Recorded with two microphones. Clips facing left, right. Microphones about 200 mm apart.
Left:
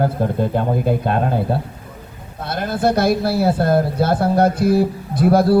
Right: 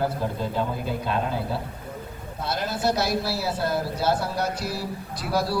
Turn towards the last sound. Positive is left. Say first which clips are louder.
# left 12 dB
turn(degrees=55)  # may be behind; listen again after turning